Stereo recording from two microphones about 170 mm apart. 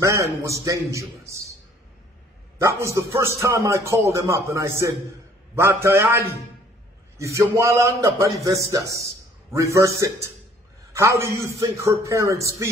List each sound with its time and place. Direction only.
0.0 s a man's voice: 20° right (ahead or behind)
2.6 s a man's voice: 15° right (ahead or behind)